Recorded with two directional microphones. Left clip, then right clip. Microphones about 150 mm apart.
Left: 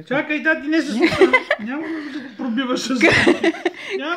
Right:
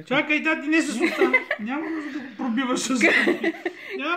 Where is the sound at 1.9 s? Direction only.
35° left (ahead or behind).